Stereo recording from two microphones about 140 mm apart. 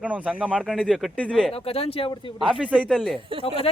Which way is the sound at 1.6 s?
45° left (ahead or behind).